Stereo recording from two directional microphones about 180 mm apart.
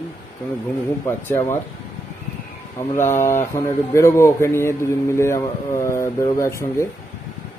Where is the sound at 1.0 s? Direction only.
15° left (ahead or behind).